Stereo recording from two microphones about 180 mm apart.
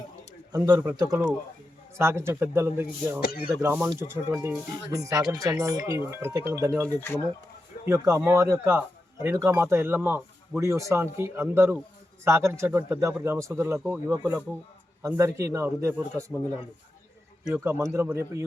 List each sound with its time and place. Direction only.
0.5 s speech: 20° right (ahead or behind)
3.2 s speech: 55° left (ahead or behind)
3.6 s speech: 10° right (ahead or behind)
6.8 s speech: 10° left (ahead or behind)
7.9 s speech: 15° right (ahead or behind)
17.5 s speech: 10° right (ahead or behind)